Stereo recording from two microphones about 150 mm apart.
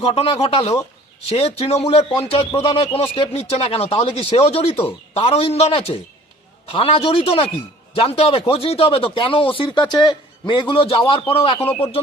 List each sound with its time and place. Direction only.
0.0 s speech: 40° left (ahead or behind)